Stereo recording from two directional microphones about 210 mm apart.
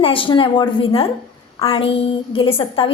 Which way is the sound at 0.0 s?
25° left (ahead or behind).